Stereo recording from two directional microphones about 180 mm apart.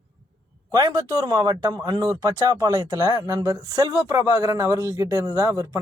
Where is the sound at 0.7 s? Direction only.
20° right (ahead or behind).